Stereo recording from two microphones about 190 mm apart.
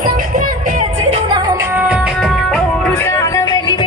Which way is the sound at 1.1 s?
25° right (ahead or behind).